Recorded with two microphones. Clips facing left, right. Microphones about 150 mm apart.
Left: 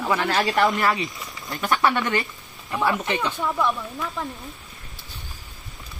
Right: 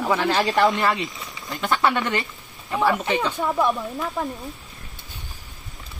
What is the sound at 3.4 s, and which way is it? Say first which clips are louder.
Speech: right 2 dB; 20° right (ahead or behind).